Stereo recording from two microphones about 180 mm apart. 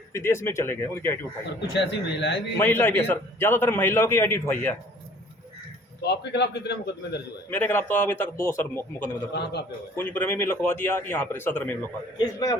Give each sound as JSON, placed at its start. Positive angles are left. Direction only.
{"t": 0.1, "sound": "a man's voice", "side_deg": 15}
{"t": 1.7, "sound": "a man's voice", "side_deg": 75}
{"t": 2.6, "sound": "a man's voice", "side_deg": 10}
{"t": 6.0, "sound": "a man's voice", "side_deg": 70}
{"t": 7.5, "sound": "a man's voice", "side_deg": 10}
{"t": 9.3, "sound": "a man's voice", "side_deg": 65}
{"t": 9.9, "sound": "a man's voice", "side_deg": 10}
{"t": 12.1, "sound": "a man's voice", "side_deg": 20}